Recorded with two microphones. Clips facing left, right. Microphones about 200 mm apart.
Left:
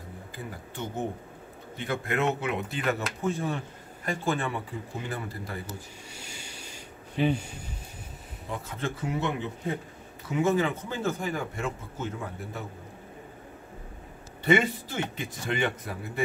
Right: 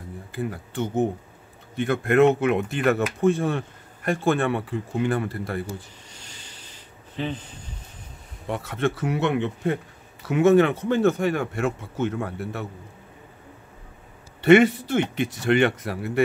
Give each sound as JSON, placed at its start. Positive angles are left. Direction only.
{"t": 1.8, "sound": "speech", "side_deg": -55}
{"t": 6.1, "sound": "a sound", "side_deg": 10}
{"t": 8.5, "sound": "speech", "side_deg": -70}
{"t": 14.4, "sound": "speech", "side_deg": -75}